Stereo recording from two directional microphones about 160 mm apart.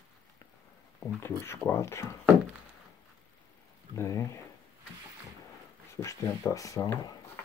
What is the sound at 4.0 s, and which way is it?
Speech, 20° left (ahead or behind).